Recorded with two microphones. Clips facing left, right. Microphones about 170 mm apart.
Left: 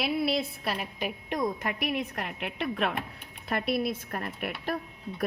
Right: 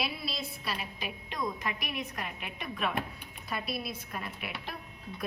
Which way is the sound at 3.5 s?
60° left (ahead or behind).